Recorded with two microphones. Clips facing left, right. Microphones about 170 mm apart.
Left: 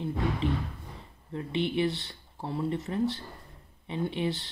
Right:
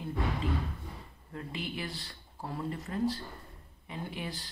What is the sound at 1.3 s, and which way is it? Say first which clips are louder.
Speech: left 9 dB; 25° left (ahead or behind).